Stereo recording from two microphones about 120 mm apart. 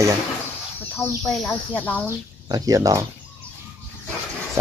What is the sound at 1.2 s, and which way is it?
Speech, 5° left (ahead or behind).